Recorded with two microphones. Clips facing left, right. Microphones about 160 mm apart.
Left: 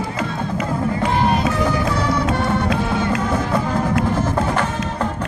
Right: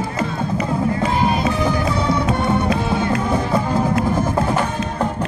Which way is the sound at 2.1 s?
15° right (ahead or behind).